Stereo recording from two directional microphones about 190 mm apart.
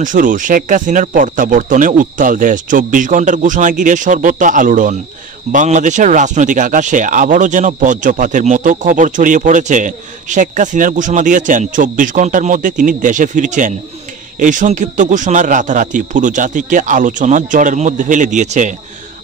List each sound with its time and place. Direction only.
0.0 s speech: 45° right (ahead or behind)